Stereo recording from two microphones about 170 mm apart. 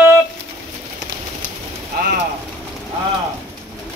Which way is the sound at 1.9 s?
65° right (ahead or behind).